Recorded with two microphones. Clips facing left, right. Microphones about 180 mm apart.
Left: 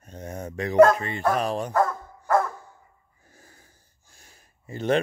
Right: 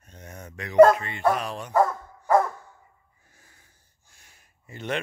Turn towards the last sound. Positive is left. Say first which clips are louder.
# left 7 dB
turn(degrees=35)  # may be behind; listen again after turning